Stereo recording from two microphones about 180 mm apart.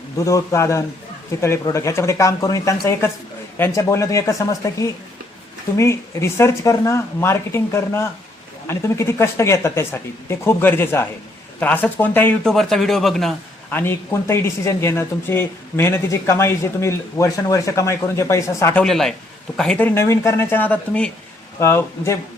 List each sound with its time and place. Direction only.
0.2 s speech: 15° left (ahead or behind)